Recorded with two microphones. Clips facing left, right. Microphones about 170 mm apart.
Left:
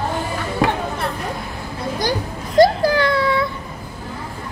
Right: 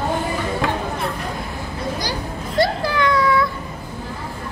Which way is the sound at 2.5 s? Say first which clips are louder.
Left 6 dB; 40° left (ahead or behind).